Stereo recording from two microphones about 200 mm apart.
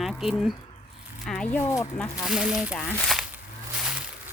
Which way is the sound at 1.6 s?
15° left (ahead or behind).